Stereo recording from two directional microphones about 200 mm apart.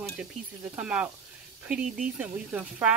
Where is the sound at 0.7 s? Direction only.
5° right (ahead or behind).